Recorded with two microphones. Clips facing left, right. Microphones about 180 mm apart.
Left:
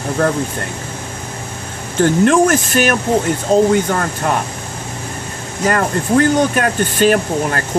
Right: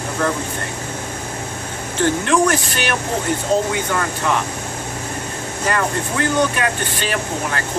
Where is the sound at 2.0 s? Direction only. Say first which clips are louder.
Left 5 dB; 45° left (ahead or behind).